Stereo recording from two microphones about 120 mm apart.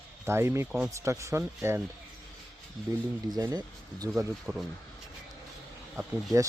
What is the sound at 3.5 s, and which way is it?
Speech, 30° right (ahead or behind).